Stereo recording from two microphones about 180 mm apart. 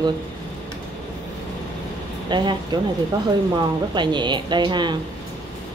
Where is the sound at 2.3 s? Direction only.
25° right (ahead or behind).